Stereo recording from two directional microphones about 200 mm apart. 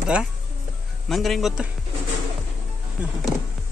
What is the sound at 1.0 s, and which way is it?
Speech, centre (ahead or behind).